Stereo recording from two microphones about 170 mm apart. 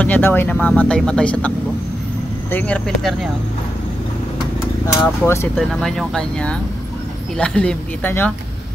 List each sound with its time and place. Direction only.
0.0 s speech: 10° left (ahead or behind)
2.5 s speech: 10° left (ahead or behind)
4.8 s speech: 15° left (ahead or behind)
5.6 s speech: 5° left (ahead or behind)